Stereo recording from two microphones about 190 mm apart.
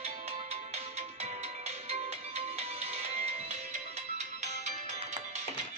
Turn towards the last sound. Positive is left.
turn(degrees=-40)  # may be behind; listen again after turning